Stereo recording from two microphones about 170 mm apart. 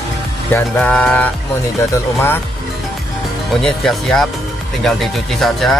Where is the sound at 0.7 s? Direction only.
5° left (ahead or behind).